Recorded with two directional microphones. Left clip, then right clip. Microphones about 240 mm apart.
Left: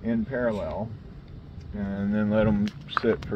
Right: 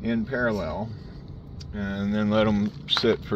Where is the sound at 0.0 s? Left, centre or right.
Right.